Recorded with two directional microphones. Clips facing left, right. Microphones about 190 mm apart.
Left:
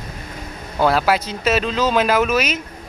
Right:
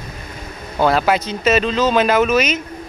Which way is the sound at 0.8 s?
5° left (ahead or behind).